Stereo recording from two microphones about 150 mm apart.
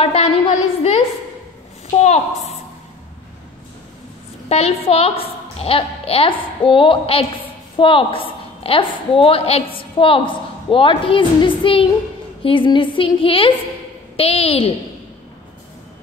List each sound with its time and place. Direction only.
0.0 s a sound: 45° left (ahead or behind)
2.0 s a woman's voice: 45° left (ahead or behind)
4.5 s a woman's voice: 45° left (ahead or behind)